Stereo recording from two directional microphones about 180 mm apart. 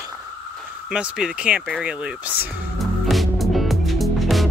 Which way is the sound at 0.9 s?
5° right (ahead or behind).